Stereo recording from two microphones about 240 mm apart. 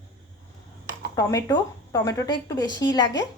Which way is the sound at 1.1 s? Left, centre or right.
Centre.